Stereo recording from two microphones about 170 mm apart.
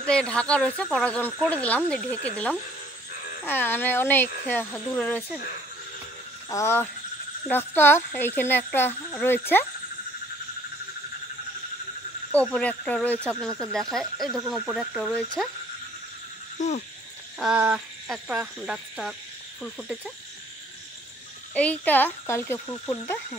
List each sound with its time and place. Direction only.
0.0 s speech: 5° left (ahead or behind)
6.5 s speech: 15° left (ahead or behind)
12.3 s speech: 10° left (ahead or behind)
16.5 s a sound: 40° left (ahead or behind)
17.4 s speech: 5° right (ahead or behind)
21.5 s speech: 10° left (ahead or behind)